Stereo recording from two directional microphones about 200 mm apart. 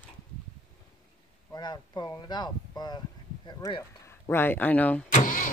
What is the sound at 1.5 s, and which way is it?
Speech, 20° left (ahead or behind).